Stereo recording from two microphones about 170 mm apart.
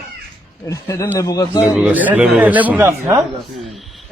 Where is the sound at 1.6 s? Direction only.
5° right (ahead or behind).